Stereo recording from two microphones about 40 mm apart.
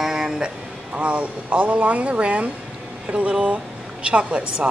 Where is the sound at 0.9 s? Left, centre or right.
Right.